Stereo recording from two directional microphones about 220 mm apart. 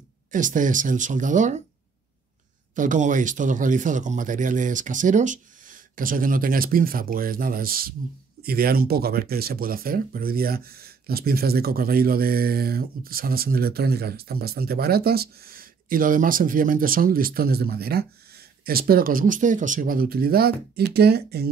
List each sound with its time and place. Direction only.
0.3 s speech: 35° right (ahead or behind)
2.7 s speech: 35° right (ahead or behind)